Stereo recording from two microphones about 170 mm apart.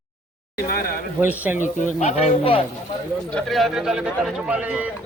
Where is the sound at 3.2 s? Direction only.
5° left (ahead or behind).